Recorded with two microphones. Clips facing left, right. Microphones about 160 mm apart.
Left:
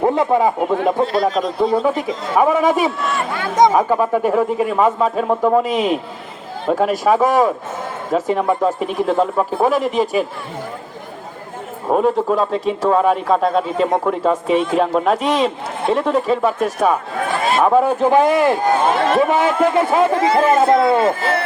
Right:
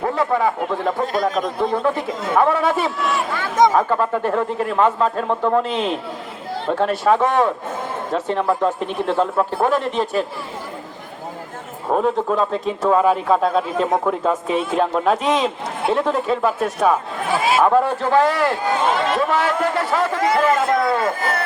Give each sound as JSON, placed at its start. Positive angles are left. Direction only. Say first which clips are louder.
{"t": 0.0, "sound": "a man's voice", "louder": "left 4 dB", "side_deg": 25}
{"t": 3.0, "sound": "speech", "louder": "even", "side_deg": 0}
{"t": 3.6, "sound": "a man's voice", "louder": "left 2 dB", "side_deg": 15}
{"t": 11.9, "sound": "speech", "louder": "left 3 dB", "side_deg": 5}
{"t": 17.7, "sound": "a man's voice", "louder": "left 3 dB", "side_deg": 10}